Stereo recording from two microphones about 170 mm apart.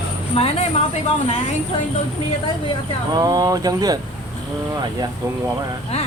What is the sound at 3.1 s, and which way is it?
Speech, 25° right (ahead or behind).